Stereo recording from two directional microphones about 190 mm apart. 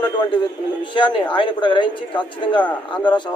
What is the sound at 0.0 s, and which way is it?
A man's voice, 25° left (ahead or behind).